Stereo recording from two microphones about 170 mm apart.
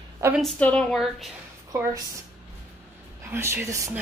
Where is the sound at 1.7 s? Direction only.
20° right (ahead or behind).